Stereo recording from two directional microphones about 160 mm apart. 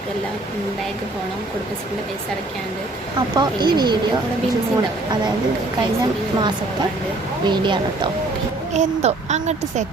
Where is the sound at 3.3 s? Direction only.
25° right (ahead or behind).